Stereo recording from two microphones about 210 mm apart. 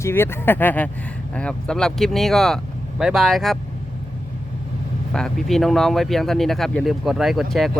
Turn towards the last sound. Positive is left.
turn(degrees=0)  # may be behind; listen again after turning